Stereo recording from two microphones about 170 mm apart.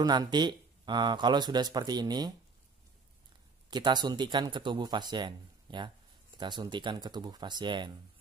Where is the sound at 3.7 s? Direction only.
25° right (ahead or behind).